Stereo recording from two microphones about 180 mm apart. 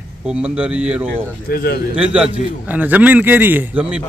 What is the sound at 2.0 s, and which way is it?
A man's voice, 5° right (ahead or behind).